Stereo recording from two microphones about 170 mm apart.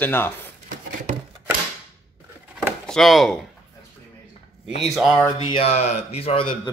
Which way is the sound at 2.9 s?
Centre (ahead or behind).